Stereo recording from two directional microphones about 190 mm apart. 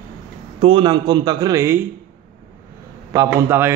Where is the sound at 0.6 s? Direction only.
25° right (ahead or behind).